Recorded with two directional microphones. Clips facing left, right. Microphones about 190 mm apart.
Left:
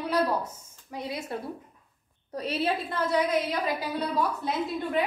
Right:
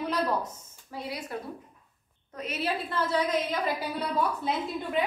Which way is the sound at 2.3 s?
30° left (ahead or behind).